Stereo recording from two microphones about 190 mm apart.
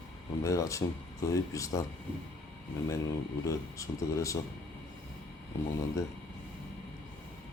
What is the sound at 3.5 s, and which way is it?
Speech, 15° left (ahead or behind).